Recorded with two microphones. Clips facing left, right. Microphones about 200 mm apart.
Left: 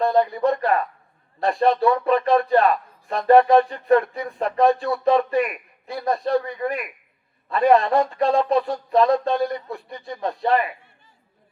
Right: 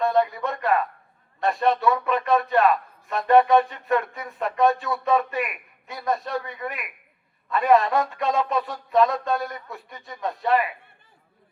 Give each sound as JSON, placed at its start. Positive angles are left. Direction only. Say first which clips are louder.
{"t": 0.3, "sound": "a man's voice", "louder": "left 4 dB", "side_deg": 30}